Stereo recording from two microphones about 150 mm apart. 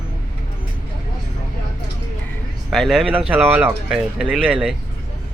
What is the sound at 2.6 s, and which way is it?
Speech, centre (ahead or behind).